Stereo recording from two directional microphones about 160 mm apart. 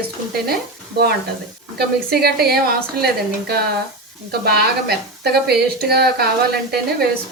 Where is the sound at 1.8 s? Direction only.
80° right.